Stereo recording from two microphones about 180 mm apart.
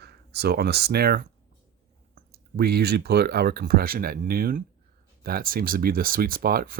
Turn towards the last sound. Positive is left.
turn(degrees=-55)  # may be behind; listen again after turning